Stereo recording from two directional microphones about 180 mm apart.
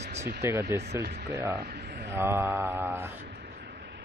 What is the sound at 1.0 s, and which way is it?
Speech, 65° right (ahead or behind).